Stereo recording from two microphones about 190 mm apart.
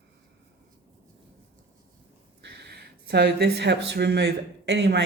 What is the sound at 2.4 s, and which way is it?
Speech, 60° right (ahead or behind).